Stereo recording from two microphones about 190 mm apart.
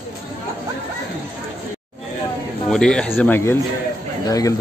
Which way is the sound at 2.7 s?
5° left (ahead or behind).